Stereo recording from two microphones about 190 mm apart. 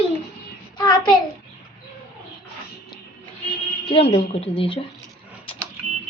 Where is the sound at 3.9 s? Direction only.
30° left (ahead or behind).